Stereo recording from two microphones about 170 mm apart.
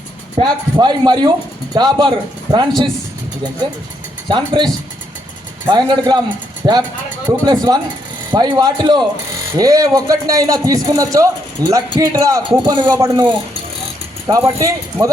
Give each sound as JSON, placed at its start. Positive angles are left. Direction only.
{"t": 0.3, "sound": "a man's voice", "side_deg": -25}
{"t": 4.3, "sound": "a man's voice", "side_deg": -25}
{"t": 5.7, "sound": "a man's voice", "side_deg": -25}